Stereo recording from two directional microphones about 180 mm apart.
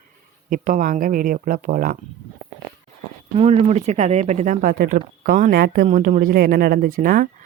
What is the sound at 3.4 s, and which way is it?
Speech, 35° right (ahead or behind).